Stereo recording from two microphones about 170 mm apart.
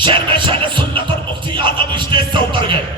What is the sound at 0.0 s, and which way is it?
Music, 30° right (ahead or behind).